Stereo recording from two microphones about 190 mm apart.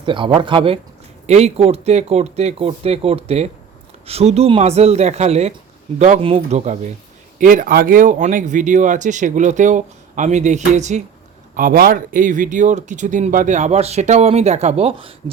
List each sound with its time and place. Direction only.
0.0 s speech: 25° right (ahead or behind)
7.3 s speech: 45° right (ahead or behind)
11.5 s speech: 50° right (ahead or behind); by 15.1 s 30° right (ahead or behind)